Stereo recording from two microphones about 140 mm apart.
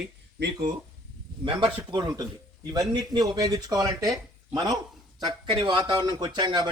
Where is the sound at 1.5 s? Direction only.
35° right (ahead or behind).